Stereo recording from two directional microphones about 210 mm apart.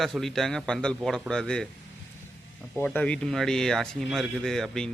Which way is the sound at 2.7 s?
5° left (ahead or behind).